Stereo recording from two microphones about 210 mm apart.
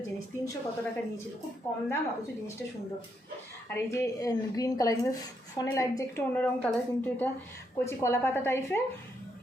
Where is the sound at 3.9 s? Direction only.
15° left (ahead or behind).